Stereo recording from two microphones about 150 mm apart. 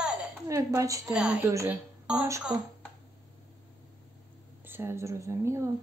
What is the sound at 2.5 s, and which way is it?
Speech, 25° right (ahead or behind).